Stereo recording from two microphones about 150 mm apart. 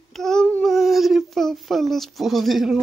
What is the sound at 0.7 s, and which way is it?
Speech, centre (ahead or behind).